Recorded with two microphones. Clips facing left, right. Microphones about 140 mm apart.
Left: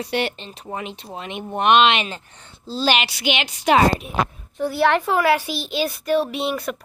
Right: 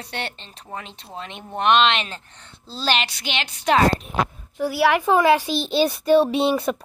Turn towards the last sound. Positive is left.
turn(degrees=-30)  # may be behind; listen again after turning